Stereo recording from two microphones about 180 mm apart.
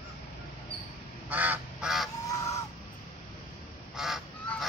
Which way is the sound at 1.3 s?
10° right (ahead or behind).